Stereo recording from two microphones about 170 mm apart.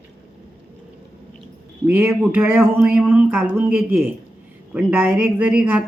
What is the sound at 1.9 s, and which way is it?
A woman's voice, 10° right (ahead or behind).